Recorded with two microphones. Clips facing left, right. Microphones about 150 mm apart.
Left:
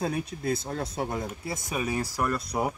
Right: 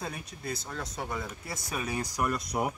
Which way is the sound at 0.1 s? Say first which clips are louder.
Left 9 dB; 55° left (ahead or behind).